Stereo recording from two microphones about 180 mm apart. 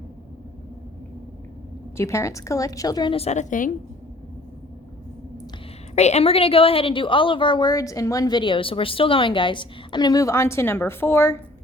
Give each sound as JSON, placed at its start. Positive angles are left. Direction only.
{"t": 2.0, "sound": "a woman's voice", "side_deg": 15}
{"t": 5.9, "sound": "a woman's voice", "side_deg": 35}